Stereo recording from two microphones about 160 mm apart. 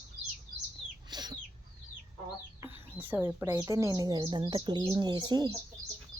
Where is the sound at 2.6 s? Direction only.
10° right (ahead or behind).